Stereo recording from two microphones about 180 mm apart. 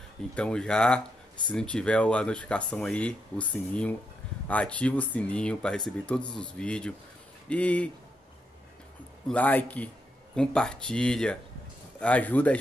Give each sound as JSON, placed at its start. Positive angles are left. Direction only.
{"t": 0.3, "sound": "speech", "side_deg": 5}
{"t": 9.3, "sound": "speech", "side_deg": 10}